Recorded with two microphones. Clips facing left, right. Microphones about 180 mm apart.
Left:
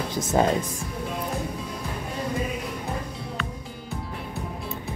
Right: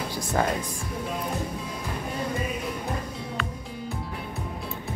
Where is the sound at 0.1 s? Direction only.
20° left (ahead or behind).